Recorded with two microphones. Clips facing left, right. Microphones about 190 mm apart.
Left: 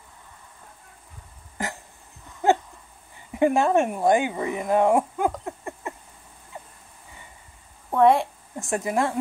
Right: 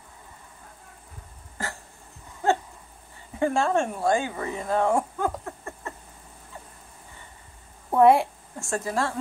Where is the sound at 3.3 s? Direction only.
15° left (ahead or behind).